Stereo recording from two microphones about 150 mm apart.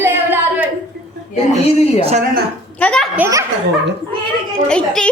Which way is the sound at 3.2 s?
20° right (ahead or behind).